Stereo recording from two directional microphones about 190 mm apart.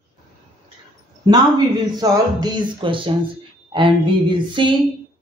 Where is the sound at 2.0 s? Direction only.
20° right (ahead or behind).